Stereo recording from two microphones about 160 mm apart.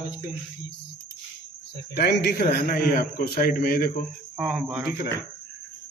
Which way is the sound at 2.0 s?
90° left.